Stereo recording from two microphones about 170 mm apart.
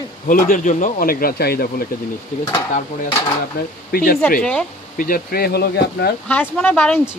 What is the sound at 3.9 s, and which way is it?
Speech, 60° left (ahead or behind).